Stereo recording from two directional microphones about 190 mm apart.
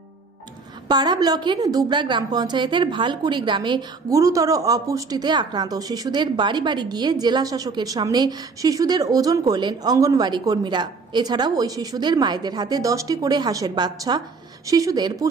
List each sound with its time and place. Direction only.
0.8 s a woman's voice: 20° right (ahead or behind)